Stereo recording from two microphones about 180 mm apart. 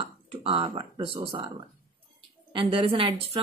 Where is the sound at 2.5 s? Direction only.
30° right (ahead or behind).